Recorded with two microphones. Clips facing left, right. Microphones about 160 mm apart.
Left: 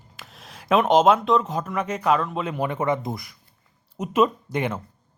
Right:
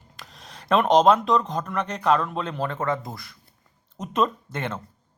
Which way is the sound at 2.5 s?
15° left (ahead or behind).